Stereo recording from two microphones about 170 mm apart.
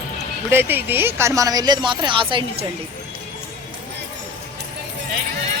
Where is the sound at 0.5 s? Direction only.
10° right (ahead or behind); by 2.6 s 30° right (ahead or behind).